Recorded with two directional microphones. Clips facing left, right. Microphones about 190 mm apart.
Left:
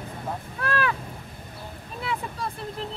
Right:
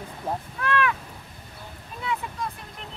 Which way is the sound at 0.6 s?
35° left (ahead or behind).